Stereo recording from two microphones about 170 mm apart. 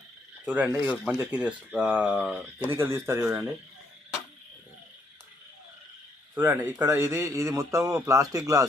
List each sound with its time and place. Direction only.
0.4 s speech: 10° right (ahead or behind)
6.3 s speech: 10° right (ahead or behind)